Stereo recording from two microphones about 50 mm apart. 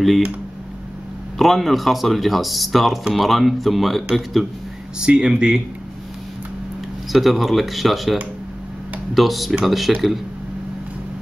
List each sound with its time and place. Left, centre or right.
1.4 s speech: centre
5.0 s speech: centre
7.1 s speech: centre